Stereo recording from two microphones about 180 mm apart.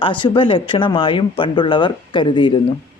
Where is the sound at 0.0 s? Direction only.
30° left (ahead or behind).